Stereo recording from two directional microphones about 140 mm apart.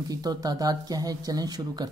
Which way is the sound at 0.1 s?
30° right (ahead or behind).